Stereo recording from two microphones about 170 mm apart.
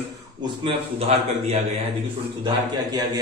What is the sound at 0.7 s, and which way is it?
Speech, 40° right (ahead or behind).